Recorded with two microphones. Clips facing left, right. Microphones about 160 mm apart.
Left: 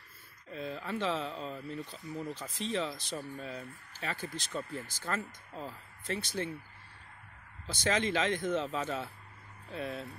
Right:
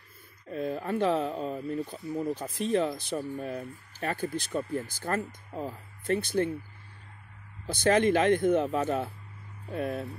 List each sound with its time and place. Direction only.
0.5 s speech: 50° right (ahead or behind)
7.6 s speech: 55° right (ahead or behind)